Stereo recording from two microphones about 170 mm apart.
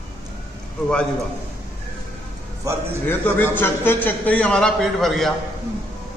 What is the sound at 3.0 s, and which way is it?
A man's voice, 10° left (ahead or behind).